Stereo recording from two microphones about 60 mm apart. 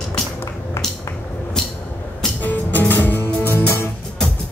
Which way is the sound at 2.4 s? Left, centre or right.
Left.